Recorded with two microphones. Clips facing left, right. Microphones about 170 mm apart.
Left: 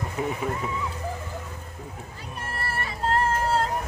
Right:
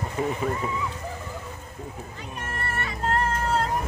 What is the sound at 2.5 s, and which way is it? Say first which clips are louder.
Vehicle: even; 35° left (ahead or behind).